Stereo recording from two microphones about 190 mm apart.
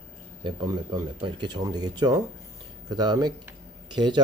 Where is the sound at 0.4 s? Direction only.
20° right (ahead or behind).